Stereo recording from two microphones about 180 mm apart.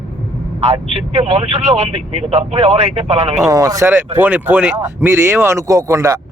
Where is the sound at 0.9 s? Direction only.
35° right (ahead or behind).